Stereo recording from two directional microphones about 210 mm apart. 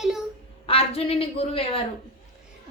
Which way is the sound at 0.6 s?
25° left (ahead or behind).